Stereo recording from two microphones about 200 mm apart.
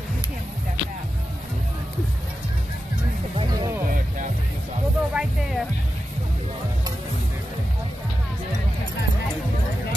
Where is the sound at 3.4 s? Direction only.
20° right (ahead or behind).